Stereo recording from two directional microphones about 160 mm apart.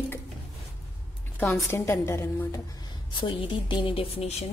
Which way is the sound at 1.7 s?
15° left (ahead or behind).